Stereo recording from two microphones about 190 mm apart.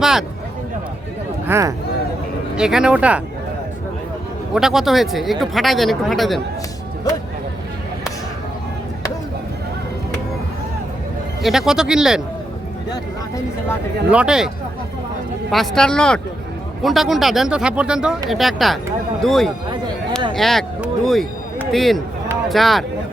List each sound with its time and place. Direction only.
0.0 s a sound: centre (ahead or behind)
1.5 s speech: 15° right (ahead or behind)
2.6 s speech: 5° right (ahead or behind)
4.5 s speech: centre (ahead or behind)
11.4 s speech: centre (ahead or behind)
12.9 s speech: 15° left (ahead or behind)
14.1 s speech: 5° right (ahead or behind)